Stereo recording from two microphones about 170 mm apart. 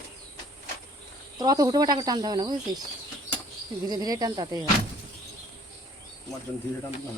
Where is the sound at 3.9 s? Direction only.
20° right (ahead or behind).